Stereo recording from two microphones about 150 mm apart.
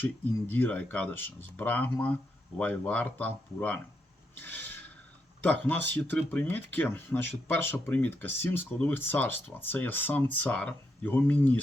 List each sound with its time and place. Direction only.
0.0 s speech: 15° left (ahead or behind)
4.4 s a sound: 10° left (ahead or behind)
5.4 s speech: 10° left (ahead or behind)